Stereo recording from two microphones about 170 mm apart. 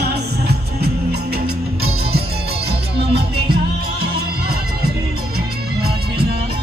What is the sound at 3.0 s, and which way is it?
Music, 75° right (ahead or behind).